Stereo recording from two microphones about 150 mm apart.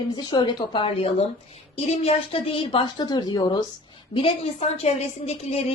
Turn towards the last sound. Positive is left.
turn(degrees=45)  # may be behind; listen again after turning